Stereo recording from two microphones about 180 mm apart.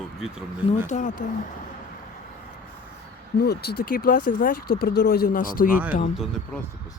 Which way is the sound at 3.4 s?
60° left (ahead or behind).